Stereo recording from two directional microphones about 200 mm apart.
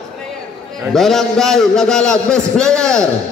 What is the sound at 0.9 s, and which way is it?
A man's voice, centre (ahead or behind).